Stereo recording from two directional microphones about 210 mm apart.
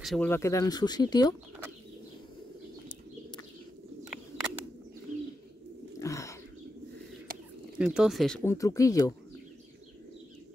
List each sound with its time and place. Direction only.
0.0 s speech: 5° left (ahead or behind); by 1.3 s 20° left (ahead or behind)
5.9 s wild animals: 15° left (ahead or behind)
7.7 s speech: 5° right (ahead or behind)
8.5 s speech: 15° left (ahead or behind)